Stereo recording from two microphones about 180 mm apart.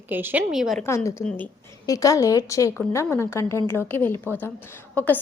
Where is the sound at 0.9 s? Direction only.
15° left (ahead or behind).